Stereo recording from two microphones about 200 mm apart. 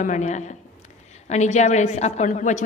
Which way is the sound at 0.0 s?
35° left (ahead or behind).